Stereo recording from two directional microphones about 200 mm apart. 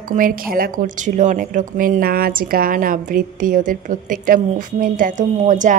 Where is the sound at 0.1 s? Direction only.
45° right (ahead or behind).